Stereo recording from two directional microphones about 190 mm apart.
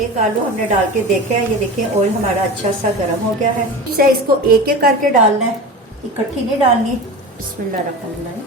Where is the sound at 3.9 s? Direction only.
50° right (ahead or behind).